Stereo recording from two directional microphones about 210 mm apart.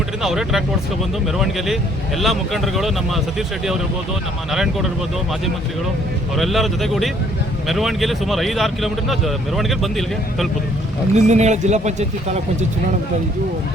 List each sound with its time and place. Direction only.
0.2 s speech: centre (ahead or behind)
6.3 s speech: centre (ahead or behind)
11.1 s speech: 35° right (ahead or behind)